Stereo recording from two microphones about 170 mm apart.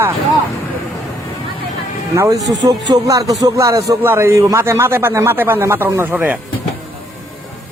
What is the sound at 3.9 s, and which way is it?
Speech, 15° right (ahead or behind).